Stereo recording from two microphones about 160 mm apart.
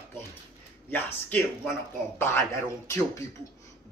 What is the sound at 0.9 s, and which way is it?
Speech, 10° left (ahead or behind).